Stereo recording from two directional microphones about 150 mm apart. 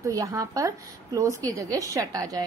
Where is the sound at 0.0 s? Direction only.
20° right (ahead or behind).